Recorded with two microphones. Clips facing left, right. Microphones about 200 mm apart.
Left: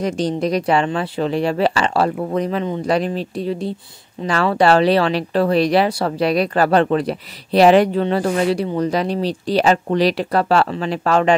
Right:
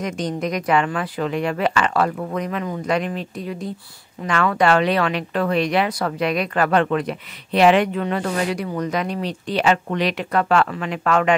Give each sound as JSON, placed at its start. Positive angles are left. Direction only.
{"t": 0.0, "sound": "speech", "side_deg": 30}